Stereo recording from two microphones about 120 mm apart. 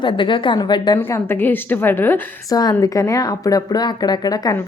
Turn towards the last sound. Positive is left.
turn(degrees=30)  # may be behind; listen again after turning